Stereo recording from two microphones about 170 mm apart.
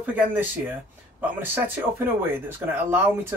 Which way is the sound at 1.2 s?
15° right (ahead or behind).